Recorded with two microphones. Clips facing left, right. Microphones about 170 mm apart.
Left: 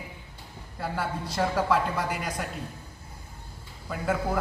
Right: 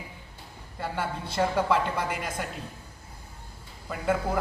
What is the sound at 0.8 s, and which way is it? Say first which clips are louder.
A man's voice: left 1 dB; centre (ahead or behind).